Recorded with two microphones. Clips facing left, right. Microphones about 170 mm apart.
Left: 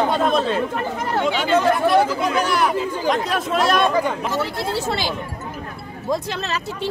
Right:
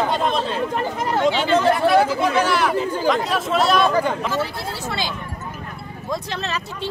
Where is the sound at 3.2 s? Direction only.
50° left (ahead or behind).